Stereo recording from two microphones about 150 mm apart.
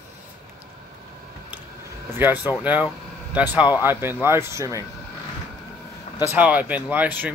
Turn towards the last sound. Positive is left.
turn(degrees=-10)  # may be behind; listen again after turning